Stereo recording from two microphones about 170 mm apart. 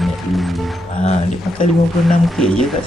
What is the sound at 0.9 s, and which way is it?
Speech, 40° left (ahead or behind).